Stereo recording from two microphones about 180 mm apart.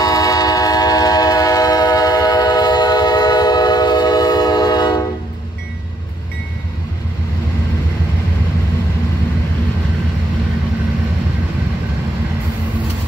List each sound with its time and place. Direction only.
0.0 s train: 20° left (ahead or behind)